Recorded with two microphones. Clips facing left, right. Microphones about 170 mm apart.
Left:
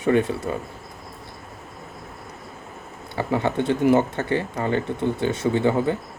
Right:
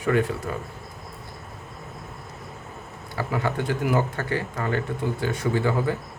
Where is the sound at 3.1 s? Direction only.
25° left (ahead or behind).